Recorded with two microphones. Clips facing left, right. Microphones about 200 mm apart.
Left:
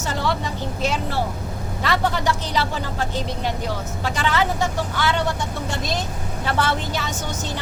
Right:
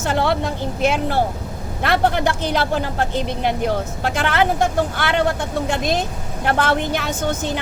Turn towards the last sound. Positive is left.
turn(degrees=-55)  # may be behind; listen again after turning